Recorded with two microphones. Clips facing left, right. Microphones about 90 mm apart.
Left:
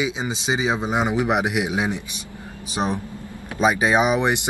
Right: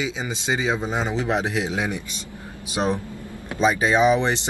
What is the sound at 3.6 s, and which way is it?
Speech, 15° left (ahead or behind).